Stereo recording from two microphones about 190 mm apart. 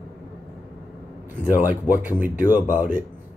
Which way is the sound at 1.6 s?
10° right (ahead or behind).